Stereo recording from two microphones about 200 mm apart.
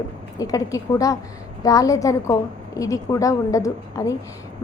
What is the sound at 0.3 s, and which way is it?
A woman's voice, 15° left (ahead or behind).